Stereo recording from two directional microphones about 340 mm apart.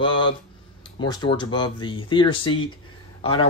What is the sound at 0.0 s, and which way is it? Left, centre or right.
Speech, centre.